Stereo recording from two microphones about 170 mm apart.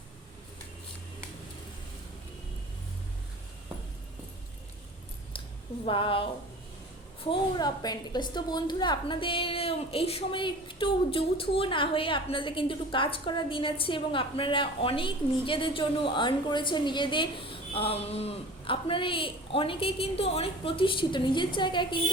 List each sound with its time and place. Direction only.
5.8 s a woman's voice: 30° left (ahead or behind)
7.3 s a woman's voice: 25° left (ahead or behind)